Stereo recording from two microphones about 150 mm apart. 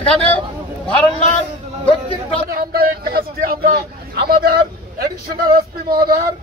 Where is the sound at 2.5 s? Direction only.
80° right.